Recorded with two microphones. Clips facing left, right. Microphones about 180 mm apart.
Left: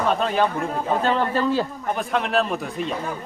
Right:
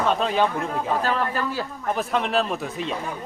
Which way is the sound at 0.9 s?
30° left (ahead or behind).